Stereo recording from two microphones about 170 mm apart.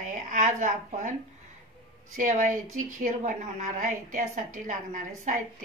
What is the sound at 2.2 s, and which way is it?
A woman's voice, 50° right (ahead or behind).